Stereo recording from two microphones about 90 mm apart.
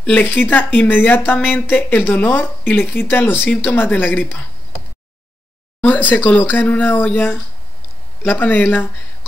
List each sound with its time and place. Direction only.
0.0 s speech: 20° left (ahead or behind)
5.8 s speech: 20° left (ahead or behind)